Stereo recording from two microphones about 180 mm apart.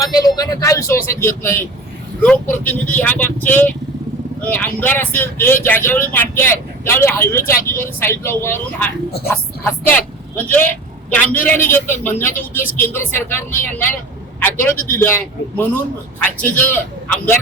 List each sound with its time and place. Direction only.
0.0 s speech: 20° left (ahead or behind)
14.8 s speech: 10° left (ahead or behind)